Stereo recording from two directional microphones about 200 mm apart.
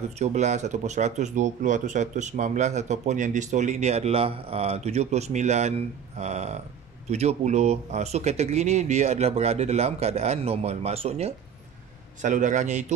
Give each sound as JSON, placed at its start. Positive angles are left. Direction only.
{"t": 0.2, "sound": "speech", "side_deg": -35}